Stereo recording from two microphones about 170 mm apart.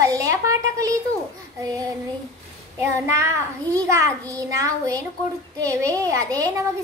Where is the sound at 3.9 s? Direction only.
20° right (ahead or behind).